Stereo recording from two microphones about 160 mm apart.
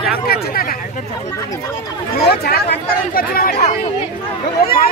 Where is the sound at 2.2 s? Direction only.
80° left.